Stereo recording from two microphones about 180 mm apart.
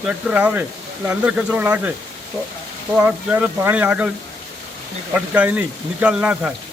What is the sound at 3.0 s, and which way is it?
Speech, 10° right (ahead or behind).